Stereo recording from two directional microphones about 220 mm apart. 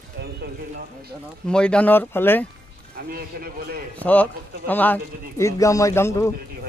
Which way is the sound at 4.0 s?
5° left (ahead or behind).